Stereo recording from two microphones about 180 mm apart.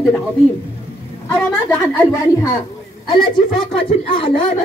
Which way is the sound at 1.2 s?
10° left (ahead or behind).